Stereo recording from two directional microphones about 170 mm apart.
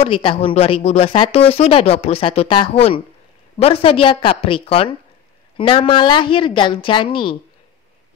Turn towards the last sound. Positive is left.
turn(degrees=30)  # may be behind; listen again after turning